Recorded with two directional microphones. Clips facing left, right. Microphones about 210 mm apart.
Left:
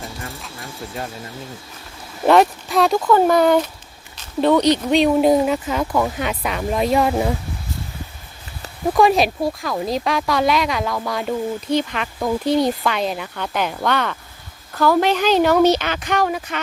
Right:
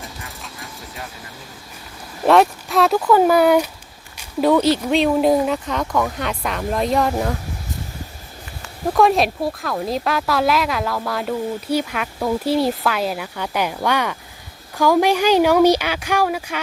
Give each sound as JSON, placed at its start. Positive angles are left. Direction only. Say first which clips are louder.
{"t": 2.2, "sound": "speech", "louder": "even", "side_deg": 0}
{"t": 8.9, "sound": "speech", "louder": "left 1 dB", "side_deg": 0}